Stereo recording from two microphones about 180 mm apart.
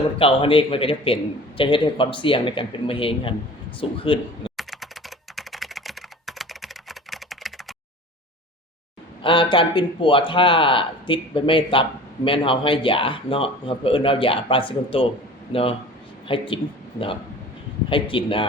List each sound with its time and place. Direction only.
0.2 s speech: 30° left (ahead or behind)
4.5 s computer keyboard: centre (ahead or behind)
9.2 s speech: 30° left (ahead or behind)
16.2 s speech: 30° left (ahead or behind)
17.8 s speech: 30° left (ahead or behind)